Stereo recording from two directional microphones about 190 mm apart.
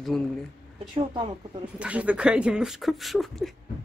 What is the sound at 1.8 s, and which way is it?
Speech, 5° right (ahead or behind).